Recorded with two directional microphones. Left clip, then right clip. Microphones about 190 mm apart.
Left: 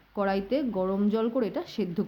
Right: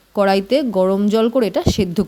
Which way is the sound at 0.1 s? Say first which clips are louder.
Right 12 dB; 50° right (ahead or behind).